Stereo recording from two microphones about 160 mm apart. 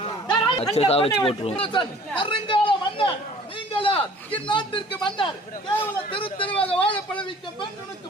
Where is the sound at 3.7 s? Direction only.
35° left (ahead or behind).